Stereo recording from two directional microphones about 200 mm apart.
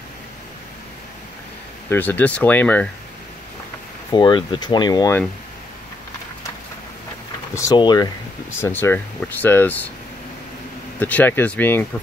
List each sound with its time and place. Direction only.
1.9 s speech: 10° left (ahead or behind)
4.1 s speech: 25° left (ahead or behind)
7.5 s speech: 20° left (ahead or behind)
11.0 s speech: 10° left (ahead or behind)